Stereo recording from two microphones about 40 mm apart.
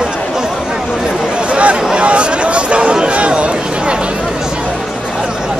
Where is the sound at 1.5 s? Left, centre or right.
Right.